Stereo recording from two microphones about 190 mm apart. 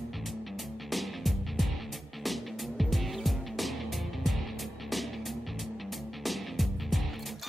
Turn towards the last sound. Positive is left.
turn(degrees=0)  # may be behind; listen again after turning